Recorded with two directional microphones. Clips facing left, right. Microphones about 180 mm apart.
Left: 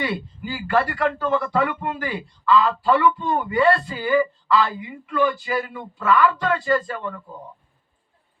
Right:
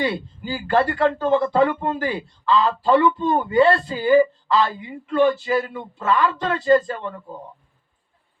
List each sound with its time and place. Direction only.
0.0 s speech: 30° right (ahead or behind)